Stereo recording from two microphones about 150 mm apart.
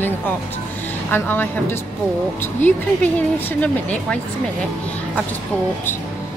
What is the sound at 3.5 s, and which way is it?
Speech, 10° left (ahead or behind).